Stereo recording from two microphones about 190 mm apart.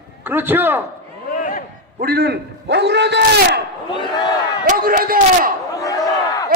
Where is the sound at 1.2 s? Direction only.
45° left (ahead or behind).